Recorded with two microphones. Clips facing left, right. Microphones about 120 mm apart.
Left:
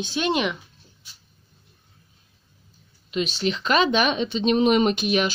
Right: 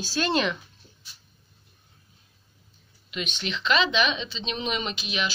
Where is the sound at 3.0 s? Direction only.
35° left (ahead or behind).